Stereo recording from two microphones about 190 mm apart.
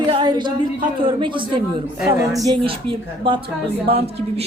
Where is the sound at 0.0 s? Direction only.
25° right (ahead or behind).